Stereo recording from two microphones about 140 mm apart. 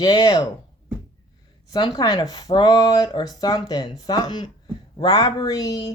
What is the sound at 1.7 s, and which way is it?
Speech, 30° left (ahead or behind).